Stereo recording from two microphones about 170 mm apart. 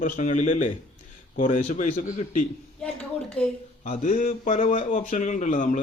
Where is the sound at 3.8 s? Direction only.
50° left (ahead or behind).